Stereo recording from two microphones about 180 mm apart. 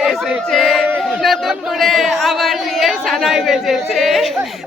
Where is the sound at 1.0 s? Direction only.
Centre (ahead or behind).